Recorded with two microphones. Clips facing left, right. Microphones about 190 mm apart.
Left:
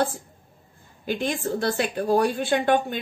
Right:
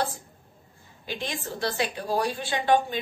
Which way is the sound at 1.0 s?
50° left (ahead or behind).